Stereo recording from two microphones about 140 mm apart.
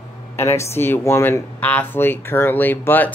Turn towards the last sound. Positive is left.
turn(degrees=15)  # may be behind; listen again after turning